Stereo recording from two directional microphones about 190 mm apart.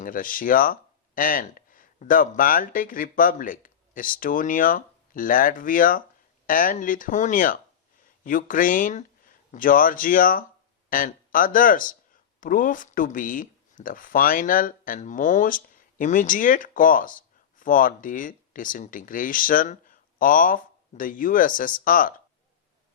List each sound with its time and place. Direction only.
0.0 s speech: 45° left (ahead or behind)